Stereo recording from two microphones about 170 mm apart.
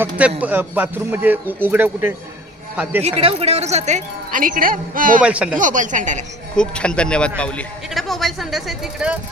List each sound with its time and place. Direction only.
0.0 s speech: 10° right (ahead or behind)
3.0 s speech: 35° right (ahead or behind); by 5.2 s 55° right (ahead or behind)
5.2 s speech: 5° right (ahead or behind)
5.5 s speech: 50° right (ahead or behind)
6.6 s speech: 5° left (ahead or behind)